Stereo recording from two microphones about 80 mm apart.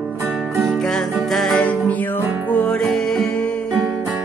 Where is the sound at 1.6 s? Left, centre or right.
Centre.